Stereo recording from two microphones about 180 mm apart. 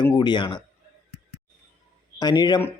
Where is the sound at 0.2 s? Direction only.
25° left (ahead or behind).